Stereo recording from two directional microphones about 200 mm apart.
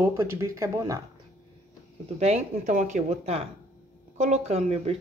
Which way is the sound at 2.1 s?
35° right (ahead or behind).